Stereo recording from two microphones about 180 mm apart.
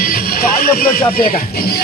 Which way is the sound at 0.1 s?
55° left (ahead or behind).